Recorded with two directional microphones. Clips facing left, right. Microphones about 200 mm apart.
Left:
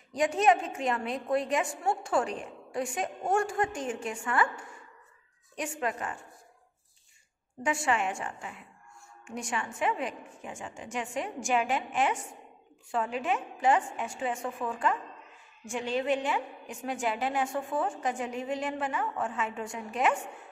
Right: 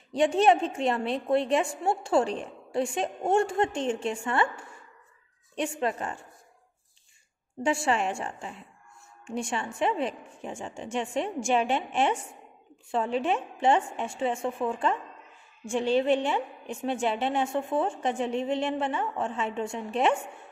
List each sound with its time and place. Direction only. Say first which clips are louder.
0.1 s a woman's voice: right 3 dB; 30° right (ahead or behind)
5.6 s a woman's voice: right 4 dB; 30° right (ahead or behind)
7.6 s a woman's voice: right 3 dB; 30° right (ahead or behind)